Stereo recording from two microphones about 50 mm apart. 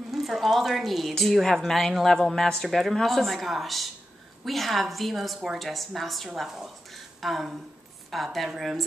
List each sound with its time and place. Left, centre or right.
0.1 s a woman's voice: centre